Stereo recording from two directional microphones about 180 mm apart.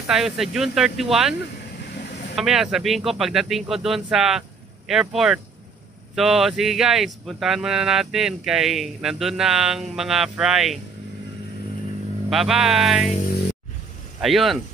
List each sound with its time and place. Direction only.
0.0 s speech: centre (ahead or behind)
2.3 s speech: centre (ahead or behind)
12.3 s speech: centre (ahead or behind)
14.2 s speech: centre (ahead or behind)